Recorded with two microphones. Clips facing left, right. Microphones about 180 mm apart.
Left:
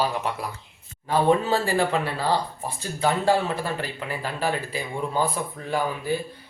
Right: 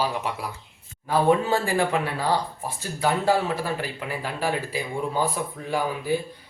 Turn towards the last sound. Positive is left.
turn(degrees=-10)  # may be behind; listen again after turning